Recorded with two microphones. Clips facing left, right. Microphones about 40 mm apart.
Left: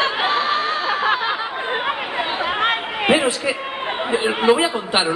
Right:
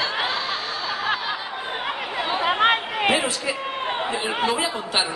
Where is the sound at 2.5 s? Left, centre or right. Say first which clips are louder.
Right 3 dB; centre.